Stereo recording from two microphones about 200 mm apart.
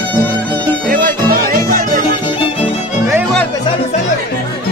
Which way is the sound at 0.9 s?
45° right (ahead or behind).